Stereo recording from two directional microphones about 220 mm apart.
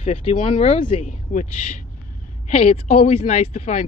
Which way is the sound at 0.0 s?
35° left (ahead or behind).